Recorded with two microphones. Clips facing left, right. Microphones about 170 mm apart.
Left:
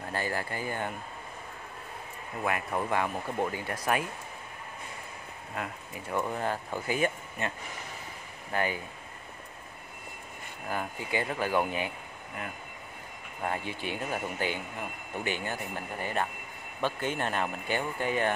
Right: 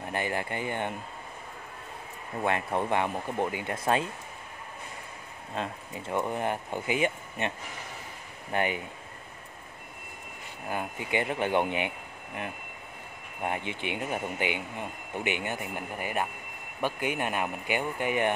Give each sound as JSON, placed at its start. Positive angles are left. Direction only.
{"t": 0.1, "sound": "speech", "side_deg": -20}
{"t": 2.4, "sound": "speech", "side_deg": -25}
{"t": 5.5, "sound": "speech", "side_deg": -25}
{"t": 10.7, "sound": "speech", "side_deg": -20}
{"t": 13.4, "sound": "speech", "side_deg": -20}